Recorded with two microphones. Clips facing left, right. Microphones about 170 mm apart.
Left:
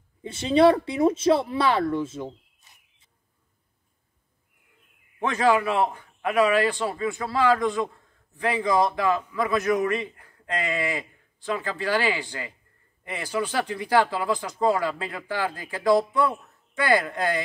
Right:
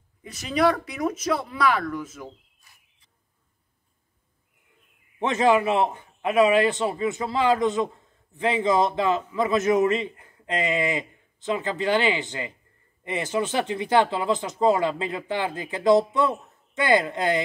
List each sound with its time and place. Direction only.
0.2 s speech: 25° left (ahead or behind)
5.2 s a man's voice: 20° right (ahead or behind)